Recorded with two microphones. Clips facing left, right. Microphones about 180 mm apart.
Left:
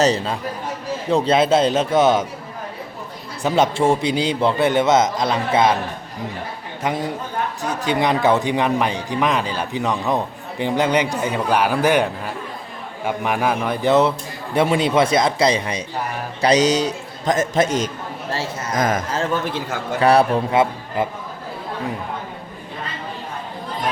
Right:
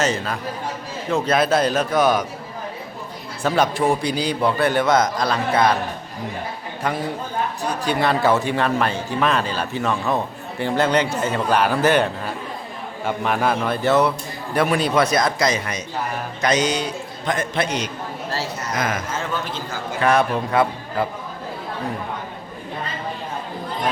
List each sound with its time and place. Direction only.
0.0 s a man's voice: 35° left (ahead or behind)
3.4 s a man's voice: 20° left (ahead or behind)
6.8 s a man's voice: 20° left (ahead or behind); by 19.6 s 50° left (ahead or behind)
20.0 s a man's voice: 35° left (ahead or behind)
20.5 s speech: 20° left (ahead or behind)